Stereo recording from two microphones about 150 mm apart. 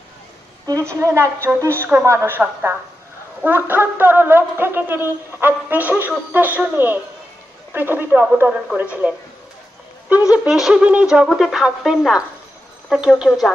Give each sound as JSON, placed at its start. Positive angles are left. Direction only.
{"t": 0.7, "sound": "a woman's voice", "side_deg": -20}
{"t": 10.3, "sound": "speech", "side_deg": -5}